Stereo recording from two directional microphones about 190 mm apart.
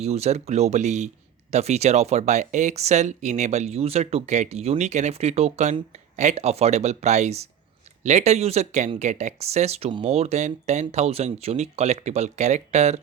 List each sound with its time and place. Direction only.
0.0 s speech: 35° right (ahead or behind)